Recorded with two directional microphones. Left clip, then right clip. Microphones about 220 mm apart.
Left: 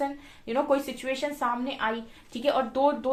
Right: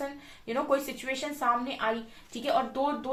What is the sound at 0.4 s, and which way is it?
Speech, 40° left (ahead or behind).